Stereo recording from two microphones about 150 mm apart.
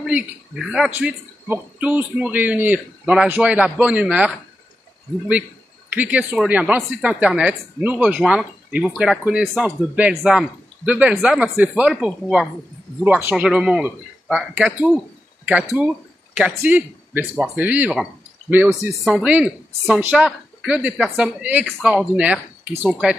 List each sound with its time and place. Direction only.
0.0 s speech: 5° right (ahead or behind)
5.9 s a man's voice: 10° right (ahead or behind)